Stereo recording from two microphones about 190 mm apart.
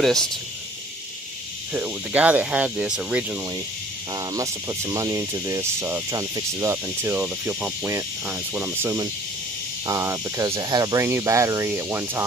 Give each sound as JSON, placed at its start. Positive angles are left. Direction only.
{"t": 0.0, "sound": "speech", "side_deg": 0}
{"t": 1.7, "sound": "speech", "side_deg": -10}
{"t": 4.1, "sound": "speech", "side_deg": -20}